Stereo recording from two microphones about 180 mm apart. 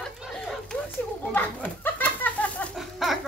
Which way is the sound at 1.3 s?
10° left (ahead or behind).